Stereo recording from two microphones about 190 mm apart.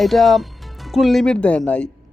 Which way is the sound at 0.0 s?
Centre (ahead or behind).